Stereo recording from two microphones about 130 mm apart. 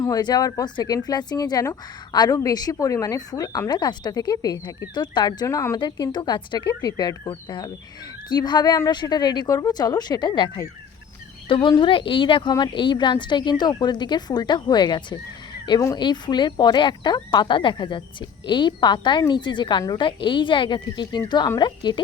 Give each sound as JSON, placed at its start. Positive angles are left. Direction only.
{"t": 0.0, "sound": "a woman's voice", "side_deg": 30}